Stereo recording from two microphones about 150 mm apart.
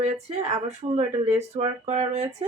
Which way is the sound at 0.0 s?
50° right (ahead or behind).